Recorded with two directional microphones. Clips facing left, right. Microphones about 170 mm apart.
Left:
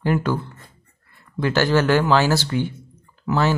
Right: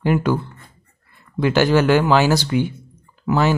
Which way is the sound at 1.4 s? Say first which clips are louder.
Right 3 dB; 15° right (ahead or behind).